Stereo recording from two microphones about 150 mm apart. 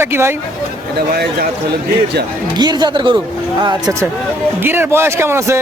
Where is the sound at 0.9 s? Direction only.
90° right.